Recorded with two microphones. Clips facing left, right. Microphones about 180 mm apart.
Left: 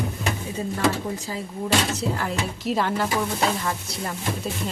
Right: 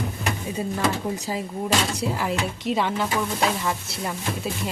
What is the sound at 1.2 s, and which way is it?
Speech, 15° right (ahead or behind).